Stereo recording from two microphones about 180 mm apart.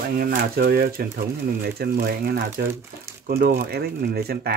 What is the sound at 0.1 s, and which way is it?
Speech, 55° right (ahead or behind).